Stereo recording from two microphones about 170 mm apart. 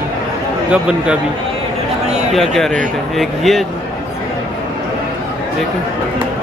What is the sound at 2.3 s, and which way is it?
Speech, centre (ahead or behind).